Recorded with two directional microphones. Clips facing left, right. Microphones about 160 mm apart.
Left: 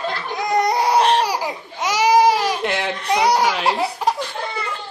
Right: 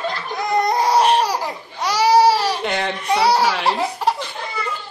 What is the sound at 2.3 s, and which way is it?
Baby cry, 15° left (ahead or behind).